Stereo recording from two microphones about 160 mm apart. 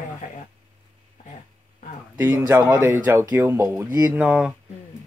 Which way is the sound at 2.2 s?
15° right (ahead or behind).